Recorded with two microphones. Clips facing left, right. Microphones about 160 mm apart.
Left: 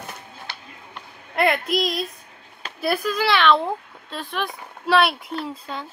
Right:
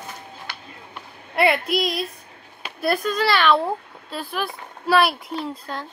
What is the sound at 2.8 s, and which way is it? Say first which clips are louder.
Speech: right 1 dB; centre (ahead or behind).